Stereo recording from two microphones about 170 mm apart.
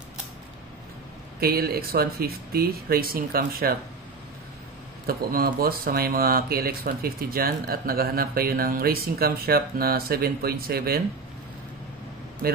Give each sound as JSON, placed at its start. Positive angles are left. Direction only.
{"t": 1.4, "sound": "speech", "side_deg": -65}
{"t": 5.0, "sound": "speech", "side_deg": -60}